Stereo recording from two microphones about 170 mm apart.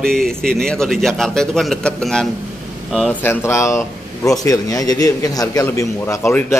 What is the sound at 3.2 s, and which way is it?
A man's voice, 15° left (ahead or behind).